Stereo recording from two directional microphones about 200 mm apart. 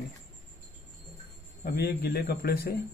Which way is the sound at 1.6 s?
50° left (ahead or behind).